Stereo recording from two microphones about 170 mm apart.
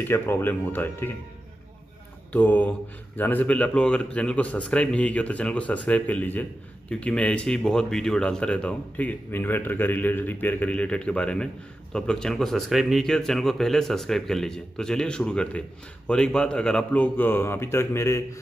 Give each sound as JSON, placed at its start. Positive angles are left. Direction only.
{"t": 0.0, "sound": "speech", "side_deg": 15}
{"t": 2.3, "sound": "speech", "side_deg": 10}